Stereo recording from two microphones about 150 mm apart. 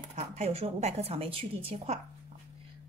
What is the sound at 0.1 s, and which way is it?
Speech, 45° right (ahead or behind).